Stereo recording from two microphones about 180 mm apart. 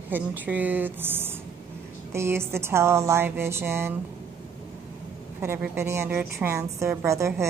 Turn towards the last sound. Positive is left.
turn(degrees=-15)  # may be behind; listen again after turning